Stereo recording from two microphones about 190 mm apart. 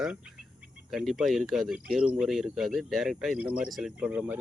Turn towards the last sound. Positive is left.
turn(degrees=-5)  # may be behind; listen again after turning